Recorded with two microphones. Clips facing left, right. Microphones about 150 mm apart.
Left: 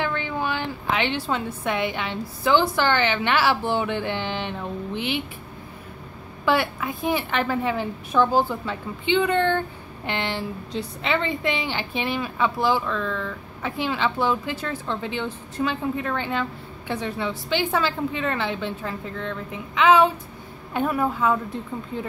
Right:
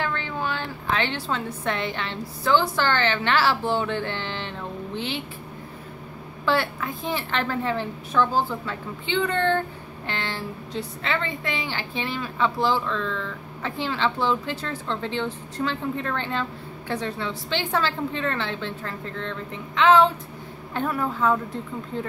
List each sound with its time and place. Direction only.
0.0 s a woman's voice: 15° left (ahead or behind)
6.4 s a woman's voice: 15° left (ahead or behind)